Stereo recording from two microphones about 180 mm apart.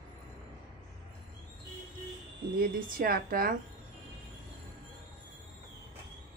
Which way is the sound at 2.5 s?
55° right (ahead or behind).